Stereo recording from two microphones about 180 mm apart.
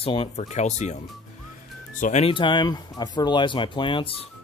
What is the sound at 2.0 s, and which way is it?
Speech, 40° left (ahead or behind).